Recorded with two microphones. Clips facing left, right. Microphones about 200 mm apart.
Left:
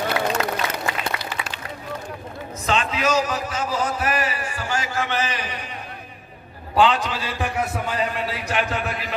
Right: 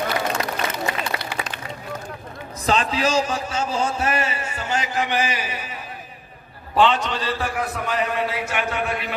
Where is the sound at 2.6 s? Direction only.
35° right (ahead or behind); by 5.6 s 10° right (ahead or behind).